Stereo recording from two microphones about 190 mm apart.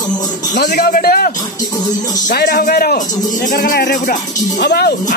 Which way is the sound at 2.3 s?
55° left (ahead or behind).